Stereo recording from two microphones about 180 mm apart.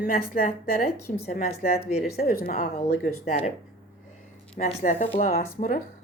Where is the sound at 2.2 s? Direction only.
55° left (ahead or behind).